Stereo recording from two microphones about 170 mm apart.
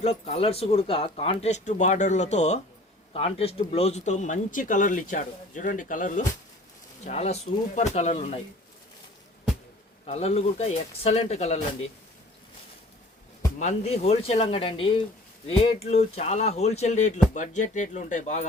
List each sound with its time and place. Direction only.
0.0 s speech: 40° left (ahead or behind)
10.1 s speech: 40° left (ahead or behind)
13.6 s speech: 40° left (ahead or behind)